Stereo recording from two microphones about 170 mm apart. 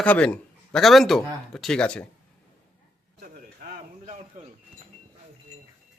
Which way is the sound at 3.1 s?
60° right (ahead or behind).